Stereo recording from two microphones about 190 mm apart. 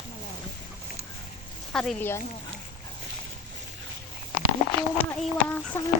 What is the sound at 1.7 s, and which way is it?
Speech, 5° left (ahead or behind).